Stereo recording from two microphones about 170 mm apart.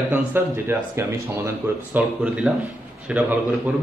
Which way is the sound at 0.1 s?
10° right (ahead or behind).